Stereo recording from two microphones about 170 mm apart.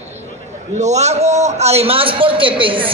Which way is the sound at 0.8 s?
40° right (ahead or behind).